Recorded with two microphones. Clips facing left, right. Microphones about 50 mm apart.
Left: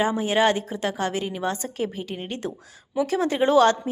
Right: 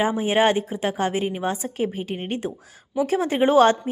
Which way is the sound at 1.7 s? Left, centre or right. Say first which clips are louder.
Right 3 dB; right.